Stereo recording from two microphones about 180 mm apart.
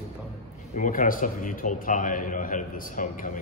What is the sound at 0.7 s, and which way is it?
A man's voice, 45° left (ahead or behind).